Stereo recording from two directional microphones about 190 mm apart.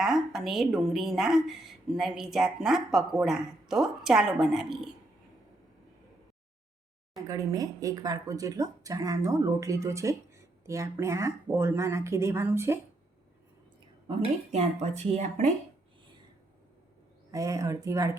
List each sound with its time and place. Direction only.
0.0 s a woman's voice: centre (ahead or behind)
7.2 s speech: 20° right (ahead or behind)
14.1 s speech: 35° right (ahead or behind)
17.3 s speech: 20° right (ahead or behind)